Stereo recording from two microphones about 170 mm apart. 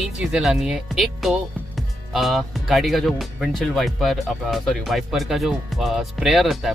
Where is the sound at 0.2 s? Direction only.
5° right (ahead or behind).